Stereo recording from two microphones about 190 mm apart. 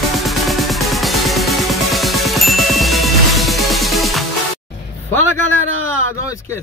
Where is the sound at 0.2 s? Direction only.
Centre (ahead or behind).